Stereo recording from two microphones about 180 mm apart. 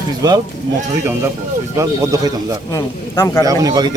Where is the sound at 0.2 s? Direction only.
20° right (ahead or behind).